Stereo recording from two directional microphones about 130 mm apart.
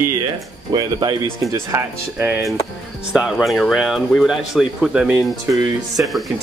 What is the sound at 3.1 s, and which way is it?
Speech, centre (ahead or behind).